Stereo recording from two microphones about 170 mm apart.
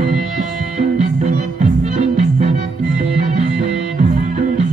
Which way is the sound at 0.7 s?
45° right (ahead or behind).